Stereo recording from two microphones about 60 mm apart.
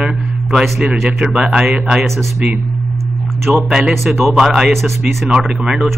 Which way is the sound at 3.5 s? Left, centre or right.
Centre.